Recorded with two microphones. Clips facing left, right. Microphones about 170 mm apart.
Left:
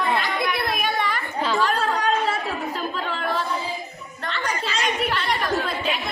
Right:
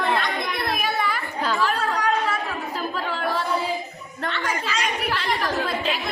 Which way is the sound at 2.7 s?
5° right (ahead or behind).